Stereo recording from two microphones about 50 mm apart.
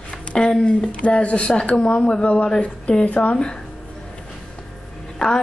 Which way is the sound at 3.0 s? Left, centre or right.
Left.